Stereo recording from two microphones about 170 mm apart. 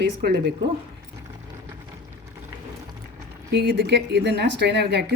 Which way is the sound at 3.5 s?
80° right.